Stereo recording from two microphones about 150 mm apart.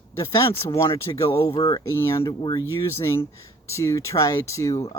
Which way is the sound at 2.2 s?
30° left (ahead or behind).